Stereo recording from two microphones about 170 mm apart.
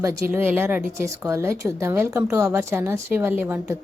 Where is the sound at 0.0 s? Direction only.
15° right (ahead or behind).